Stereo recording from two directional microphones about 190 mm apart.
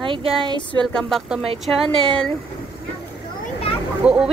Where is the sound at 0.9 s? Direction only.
Centre (ahead or behind).